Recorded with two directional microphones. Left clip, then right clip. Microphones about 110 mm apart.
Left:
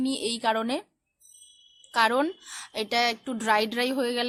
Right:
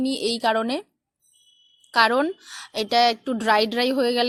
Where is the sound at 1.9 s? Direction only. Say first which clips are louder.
Right 4 dB; 40° right (ahead or behind).